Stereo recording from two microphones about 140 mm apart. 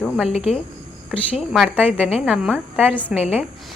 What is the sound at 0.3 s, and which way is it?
Speech, 50° left (ahead or behind).